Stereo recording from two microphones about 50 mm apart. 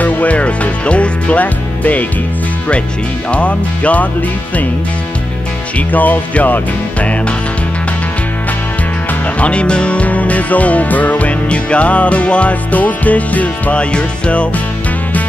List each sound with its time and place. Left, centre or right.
0.0 s music: left
3.3 s music: left
5.8 s music: left
9.4 s music: left